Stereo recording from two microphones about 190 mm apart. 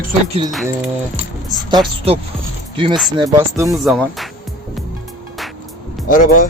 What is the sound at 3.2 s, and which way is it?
Speech, 15° right (ahead or behind).